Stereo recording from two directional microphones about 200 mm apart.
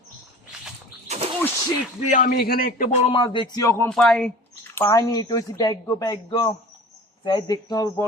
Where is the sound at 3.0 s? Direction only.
25° left (ahead or behind).